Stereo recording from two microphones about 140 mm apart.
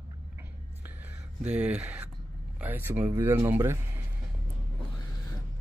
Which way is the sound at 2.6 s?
15° right (ahead or behind).